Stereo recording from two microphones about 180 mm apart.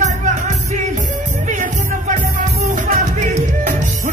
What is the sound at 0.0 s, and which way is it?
Music, 40° right (ahead or behind).